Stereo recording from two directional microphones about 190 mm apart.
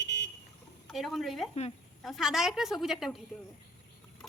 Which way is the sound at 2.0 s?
Centre (ahead or behind).